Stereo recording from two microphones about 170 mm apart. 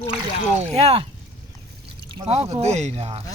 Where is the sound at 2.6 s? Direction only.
40° right (ahead or behind).